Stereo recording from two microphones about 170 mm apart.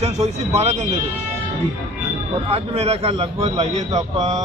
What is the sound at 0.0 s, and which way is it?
Speech, 40° right (ahead or behind).